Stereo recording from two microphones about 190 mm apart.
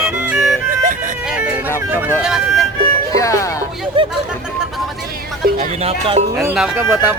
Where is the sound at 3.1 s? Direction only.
15° left (ahead or behind).